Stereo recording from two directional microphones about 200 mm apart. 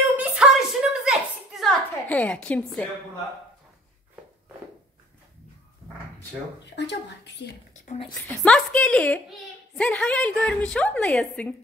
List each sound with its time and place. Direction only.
0.1 s a sound: 5° right (ahead or behind)
6.7 s speech: 60° left (ahead or behind)
7.8 s speech: 35° left (ahead or behind)
8.2 s a woman's voice: 5° left (ahead or behind)